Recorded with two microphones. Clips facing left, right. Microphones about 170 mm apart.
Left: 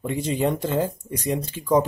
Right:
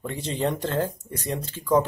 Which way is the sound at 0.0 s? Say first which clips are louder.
Left 4 dB; 10° left (ahead or behind).